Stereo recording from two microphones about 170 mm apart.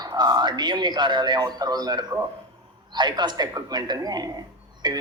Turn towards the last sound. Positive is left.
turn(degrees=-25)  # may be behind; listen again after turning